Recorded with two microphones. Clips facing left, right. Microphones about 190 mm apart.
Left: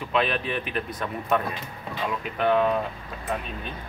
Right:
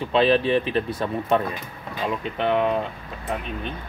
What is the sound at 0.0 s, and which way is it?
Speech, 30° right (ahead or behind).